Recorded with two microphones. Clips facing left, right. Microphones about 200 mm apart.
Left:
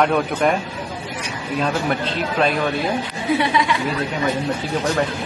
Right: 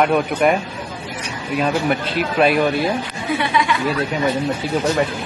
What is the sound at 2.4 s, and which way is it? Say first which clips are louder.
Speech: right 4 dB; 10° right (ahead or behind).